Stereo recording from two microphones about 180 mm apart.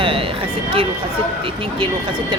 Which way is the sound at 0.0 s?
30° right (ahead or behind).